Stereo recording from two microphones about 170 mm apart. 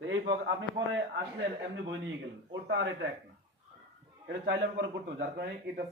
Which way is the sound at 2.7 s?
90° right.